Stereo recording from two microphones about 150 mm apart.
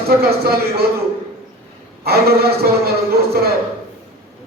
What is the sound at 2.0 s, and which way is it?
Speech, 90° right.